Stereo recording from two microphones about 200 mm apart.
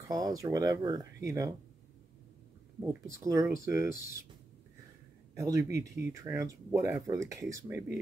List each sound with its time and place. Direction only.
0.1 s speech: 15° right (ahead or behind)
2.8 s speech: 15° right (ahead or behind)
5.3 s speech: 15° right (ahead or behind)